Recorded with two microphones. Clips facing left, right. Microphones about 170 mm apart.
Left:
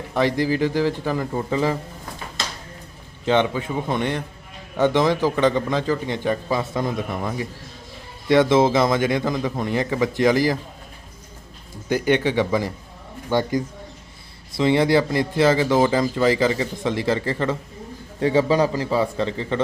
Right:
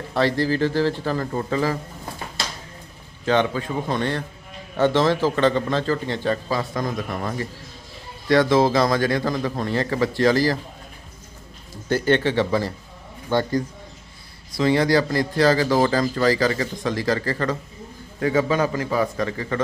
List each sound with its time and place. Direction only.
0.1 s a man's voice: 15° left (ahead or behind)
3.2 s a man's voice: 20° left (ahead or behind)
7.2 s a man's voice: 10° left (ahead or behind)
8.3 s a man's voice: 20° left (ahead or behind)
11.9 s a man's voice: 15° left (ahead or behind)
14.5 s a man's voice: 20° left (ahead or behind)